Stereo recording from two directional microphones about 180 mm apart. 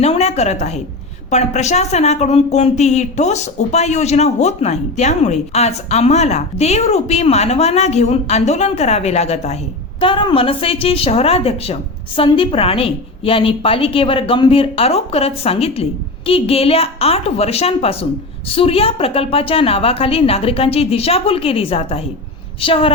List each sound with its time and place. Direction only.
0.0 s a woman's voice: 35° left (ahead or behind)